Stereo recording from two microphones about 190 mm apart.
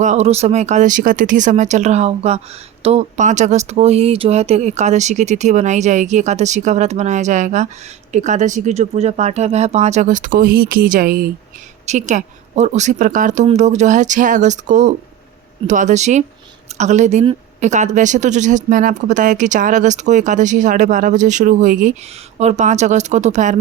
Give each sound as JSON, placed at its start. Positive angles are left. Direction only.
{"t": 0.0, "sound": "speech", "side_deg": -35}